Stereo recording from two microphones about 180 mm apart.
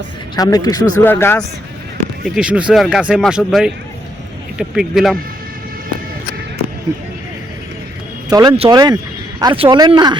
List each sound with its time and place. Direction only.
0.3 s speech: 20° left (ahead or behind)
2.2 s speech: 5° right (ahead or behind)
8.3 s speech: 20° right (ahead or behind)